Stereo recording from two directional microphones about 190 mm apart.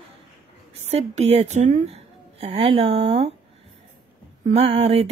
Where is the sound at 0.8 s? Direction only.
35° right (ahead or behind).